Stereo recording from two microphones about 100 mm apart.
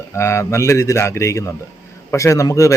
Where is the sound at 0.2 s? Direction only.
30° left (ahead or behind).